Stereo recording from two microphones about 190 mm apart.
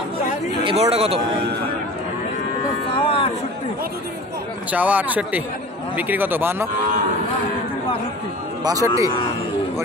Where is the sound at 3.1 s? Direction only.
30° left (ahead or behind).